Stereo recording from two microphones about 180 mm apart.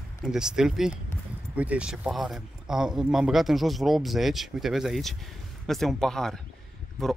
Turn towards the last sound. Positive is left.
turn(degrees=0)  # may be behind; listen again after turning